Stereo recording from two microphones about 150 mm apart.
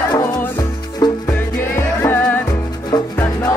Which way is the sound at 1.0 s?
25° left (ahead or behind).